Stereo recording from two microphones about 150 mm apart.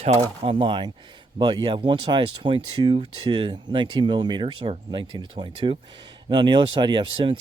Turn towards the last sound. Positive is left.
turn(degrees=-35)  # may be behind; listen again after turning